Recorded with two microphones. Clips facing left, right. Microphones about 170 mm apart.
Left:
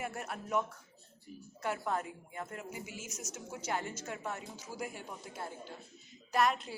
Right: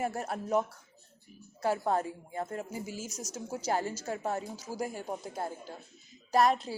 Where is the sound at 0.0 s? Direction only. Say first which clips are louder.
Right 7 dB; 35° right (ahead or behind).